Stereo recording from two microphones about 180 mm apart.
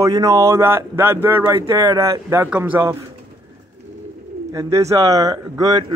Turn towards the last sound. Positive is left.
turn(degrees=-20)  # may be behind; listen again after turning